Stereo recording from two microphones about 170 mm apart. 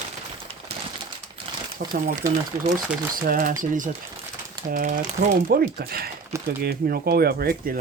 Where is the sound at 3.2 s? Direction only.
55° right (ahead or behind).